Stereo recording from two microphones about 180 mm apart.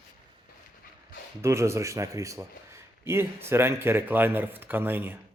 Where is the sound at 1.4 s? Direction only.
15° right (ahead or behind).